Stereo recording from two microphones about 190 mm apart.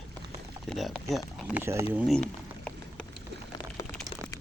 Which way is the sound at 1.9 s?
Centre (ahead or behind).